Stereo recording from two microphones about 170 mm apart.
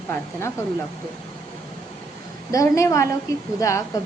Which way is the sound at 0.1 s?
15° left (ahead or behind).